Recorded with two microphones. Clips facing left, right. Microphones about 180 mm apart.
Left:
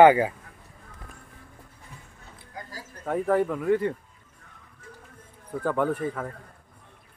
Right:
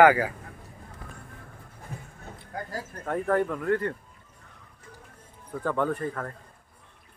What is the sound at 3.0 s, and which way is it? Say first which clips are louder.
Speech: left 2 dB; 5° left (ahead or behind).